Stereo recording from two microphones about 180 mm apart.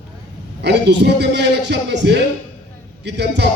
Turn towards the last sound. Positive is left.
turn(degrees=-70)  # may be behind; listen again after turning